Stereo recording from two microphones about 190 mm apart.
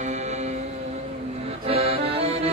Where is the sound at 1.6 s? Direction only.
30° right (ahead or behind).